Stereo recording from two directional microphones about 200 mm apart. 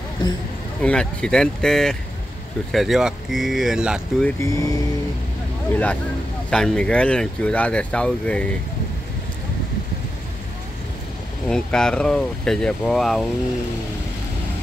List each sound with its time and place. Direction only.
0.8 s speech: 5° left (ahead or behind)
4.4 s speech: 15° left (ahead or behind)
11.4 s speech: 5° left (ahead or behind)